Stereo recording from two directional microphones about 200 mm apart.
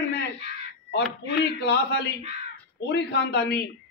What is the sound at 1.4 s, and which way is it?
A man's voice, 55° left (ahead or behind).